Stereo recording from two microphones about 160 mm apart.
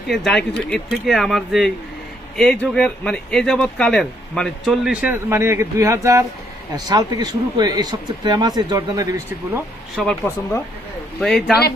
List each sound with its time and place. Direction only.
0.3 s speech: 5° left (ahead or behind); by 9.2 s 20° right (ahead or behind)
10.0 s speech: centre (ahead or behind)
11.2 s speech: 5° left (ahead or behind)